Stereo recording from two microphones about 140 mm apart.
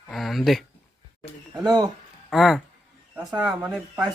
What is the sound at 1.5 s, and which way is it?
Speech, 30° right (ahead or behind).